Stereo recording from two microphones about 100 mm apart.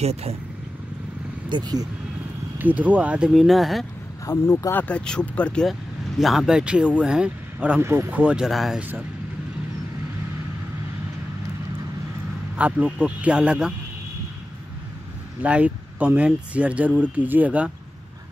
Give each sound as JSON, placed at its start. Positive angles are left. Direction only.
{"t": 0.0, "sound": "speech", "side_deg": -90}
{"t": 1.5, "sound": "speech", "side_deg": -45}
{"t": 2.6, "sound": "speech", "side_deg": -15}
{"t": 4.3, "sound": "speech", "side_deg": 30}
{"t": 4.7, "sound": "speech", "side_deg": 10}
{"t": 5.7, "sound": "speech", "side_deg": 0}
{"t": 7.8, "sound": "speech", "side_deg": -25}
{"t": 8.1, "sound": "speech", "side_deg": -15}
{"t": 12.5, "sound": "speech", "side_deg": -15}
{"t": 15.4, "sound": "speech", "side_deg": -15}